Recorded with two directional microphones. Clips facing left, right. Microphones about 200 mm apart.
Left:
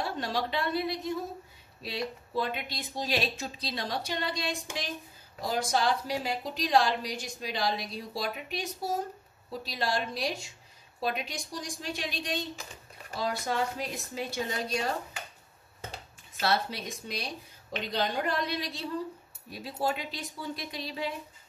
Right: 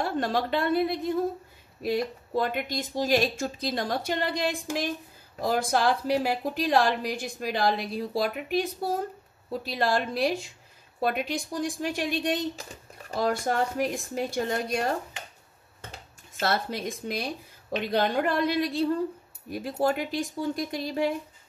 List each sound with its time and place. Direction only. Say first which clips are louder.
0.0 s a woman's voice: right 5 dB; 55° right (ahead or behind)
16.3 s speech: right 2 dB; 50° right (ahead or behind)